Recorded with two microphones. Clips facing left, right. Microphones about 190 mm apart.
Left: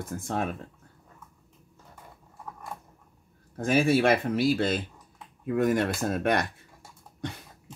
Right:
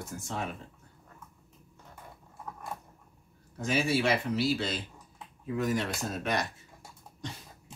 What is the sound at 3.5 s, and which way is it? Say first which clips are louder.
Speech: left 6 dB; 50° left (ahead or behind).